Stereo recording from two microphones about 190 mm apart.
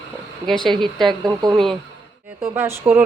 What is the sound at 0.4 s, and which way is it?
Speech, centre (ahead or behind).